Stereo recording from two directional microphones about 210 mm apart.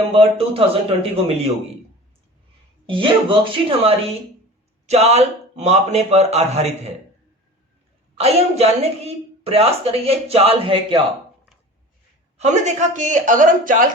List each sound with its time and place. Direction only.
0.1 s a woman's voice: 25° right (ahead or behind)
2.8 s a woman's voice: 25° right (ahead or behind)
8.2 s a woman's voice: 30° right (ahead or behind)
12.4 s a man's voice: 35° right (ahead or behind)